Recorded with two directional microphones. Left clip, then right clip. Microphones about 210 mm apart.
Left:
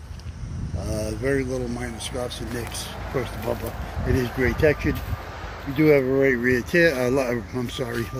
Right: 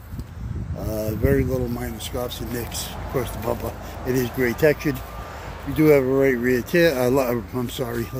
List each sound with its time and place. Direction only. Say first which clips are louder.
0.8 s speech: right 3 dB; 10° right (ahead or behind)